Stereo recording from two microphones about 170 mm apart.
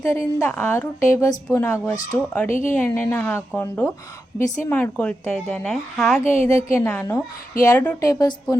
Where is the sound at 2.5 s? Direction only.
50° left (ahead or behind).